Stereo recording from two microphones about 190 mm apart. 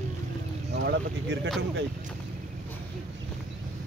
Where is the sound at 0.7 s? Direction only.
60° right (ahead or behind).